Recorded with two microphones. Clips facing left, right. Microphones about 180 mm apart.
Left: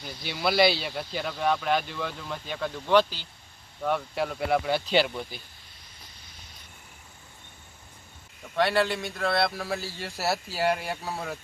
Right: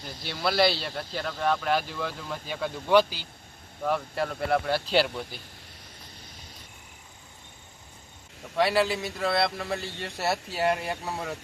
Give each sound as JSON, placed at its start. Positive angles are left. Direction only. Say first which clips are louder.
{"t": 0.0, "sound": "speech", "louder": "left 1 dB", "side_deg": 5}
{"t": 8.5, "sound": "speech", "louder": "right 1 dB", "side_deg": 0}